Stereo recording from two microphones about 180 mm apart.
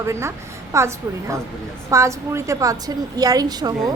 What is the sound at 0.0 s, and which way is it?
A woman's voice, 15° right (ahead or behind).